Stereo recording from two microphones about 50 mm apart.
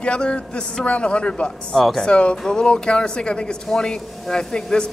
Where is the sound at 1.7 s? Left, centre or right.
Centre.